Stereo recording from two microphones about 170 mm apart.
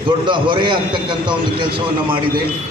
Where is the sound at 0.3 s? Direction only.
30° right (ahead or behind).